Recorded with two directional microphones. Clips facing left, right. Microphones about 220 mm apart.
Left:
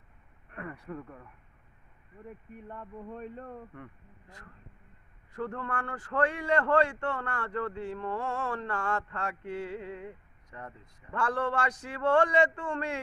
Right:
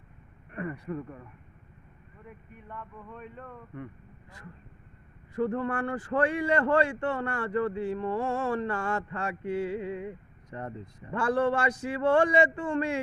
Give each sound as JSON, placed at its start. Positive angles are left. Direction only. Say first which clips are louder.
{"t": 0.5, "sound": "speech", "louder": "right 6 dB", "side_deg": -5}
{"t": 2.6, "sound": "a sound", "louder": "left 2 dB", "side_deg": 35}
{"t": 5.3, "sound": "a man's voice", "louder": "right 7 dB", "side_deg": -10}
{"t": 10.5, "sound": "speech", "louder": "right 7 dB", "side_deg": -30}
{"t": 11.1, "sound": "a man's voice", "louder": "right 5 dB", "side_deg": -10}